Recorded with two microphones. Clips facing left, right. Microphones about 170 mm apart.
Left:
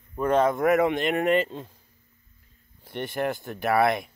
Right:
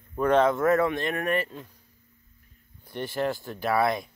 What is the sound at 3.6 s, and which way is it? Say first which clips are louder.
Speech: left 2 dB; 60° left (ahead or behind).